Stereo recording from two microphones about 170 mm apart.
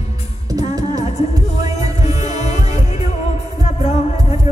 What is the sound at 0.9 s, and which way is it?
Music, 40° left (ahead or behind).